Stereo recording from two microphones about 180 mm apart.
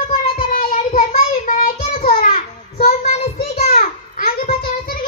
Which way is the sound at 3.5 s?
40° left (ahead or behind).